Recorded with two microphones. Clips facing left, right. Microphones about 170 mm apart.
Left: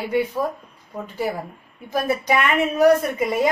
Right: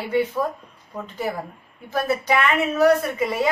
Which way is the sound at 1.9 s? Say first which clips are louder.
Left 1 dB; 15° left (ahead or behind).